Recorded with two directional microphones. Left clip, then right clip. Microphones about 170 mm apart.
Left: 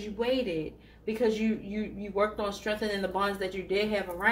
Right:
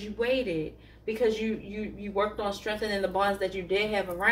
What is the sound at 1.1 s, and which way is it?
Speech, 40° left (ahead or behind).